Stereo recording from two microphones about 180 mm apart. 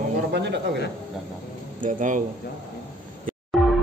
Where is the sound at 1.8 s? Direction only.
45° right (ahead or behind).